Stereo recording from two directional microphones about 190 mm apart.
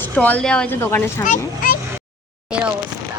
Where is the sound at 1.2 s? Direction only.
45° left (ahead or behind).